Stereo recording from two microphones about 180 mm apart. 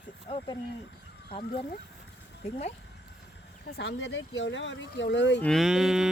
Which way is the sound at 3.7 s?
70° left (ahead or behind).